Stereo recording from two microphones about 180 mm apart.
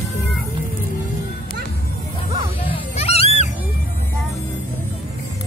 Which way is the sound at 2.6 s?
35° left (ahead or behind).